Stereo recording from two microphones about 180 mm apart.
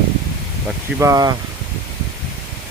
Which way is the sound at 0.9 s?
20° right (ahead or behind).